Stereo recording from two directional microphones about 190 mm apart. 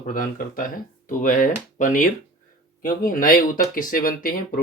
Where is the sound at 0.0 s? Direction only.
45° left (ahead or behind).